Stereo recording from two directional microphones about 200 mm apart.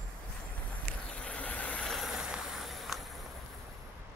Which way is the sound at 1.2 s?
5° left (ahead or behind).